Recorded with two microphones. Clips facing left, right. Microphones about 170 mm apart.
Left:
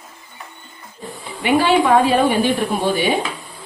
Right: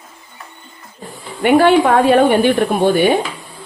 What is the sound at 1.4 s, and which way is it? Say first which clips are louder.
Speech: right 4 dB; 55° right (ahead or behind).